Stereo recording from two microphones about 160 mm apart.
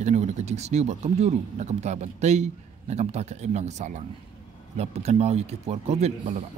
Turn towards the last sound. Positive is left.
turn(degrees=-40)  # may be behind; listen again after turning